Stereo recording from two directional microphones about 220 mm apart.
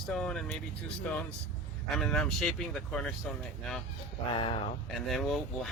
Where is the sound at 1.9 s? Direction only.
Centre (ahead or behind).